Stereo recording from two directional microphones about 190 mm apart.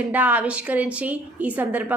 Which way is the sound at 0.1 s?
10° right (ahead or behind).